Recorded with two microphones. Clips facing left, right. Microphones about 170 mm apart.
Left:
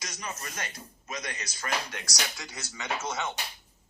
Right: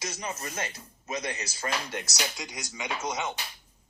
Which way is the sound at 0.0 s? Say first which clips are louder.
Right 4 dB; 25° right (ahead or behind).